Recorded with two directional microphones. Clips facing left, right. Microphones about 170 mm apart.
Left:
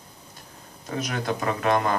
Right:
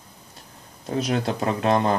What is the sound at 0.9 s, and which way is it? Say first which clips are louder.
Speech: right 4 dB; 30° right (ahead or behind).